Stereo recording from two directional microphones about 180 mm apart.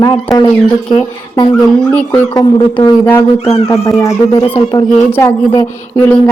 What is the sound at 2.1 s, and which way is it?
Speech, 25° left (ahead or behind).